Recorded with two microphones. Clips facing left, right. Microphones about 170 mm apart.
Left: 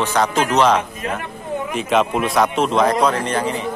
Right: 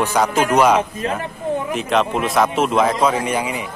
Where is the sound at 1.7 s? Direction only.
Centre (ahead or behind).